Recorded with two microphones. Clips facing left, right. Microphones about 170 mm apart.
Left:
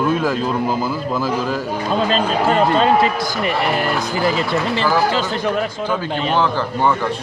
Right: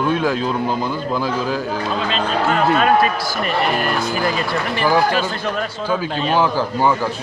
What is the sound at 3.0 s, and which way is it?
A man's voice, 20° left (ahead or behind).